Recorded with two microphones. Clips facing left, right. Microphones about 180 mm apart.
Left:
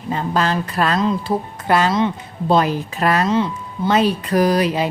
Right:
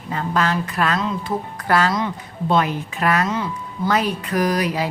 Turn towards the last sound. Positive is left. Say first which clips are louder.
# left 4 dB
turn(degrees=25)  # may be behind; listen again after turning